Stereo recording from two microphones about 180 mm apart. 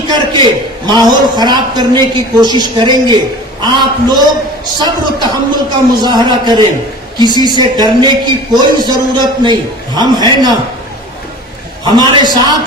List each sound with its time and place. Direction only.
0.1 s a man's voice: 25° right (ahead or behind)
11.9 s a man's voice: 25° right (ahead or behind)